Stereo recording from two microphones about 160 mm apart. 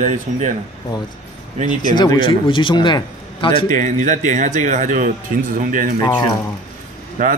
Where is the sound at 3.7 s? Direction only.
55° right (ahead or behind).